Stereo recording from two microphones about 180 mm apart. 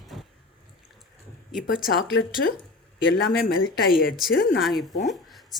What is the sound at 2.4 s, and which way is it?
Speech, 70° left (ahead or behind).